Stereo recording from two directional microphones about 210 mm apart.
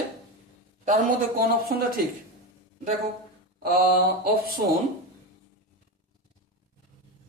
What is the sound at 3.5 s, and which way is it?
Mantra, 45° right (ahead or behind).